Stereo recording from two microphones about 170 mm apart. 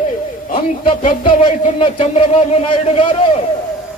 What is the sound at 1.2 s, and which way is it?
A man's voice, 35° left (ahead or behind).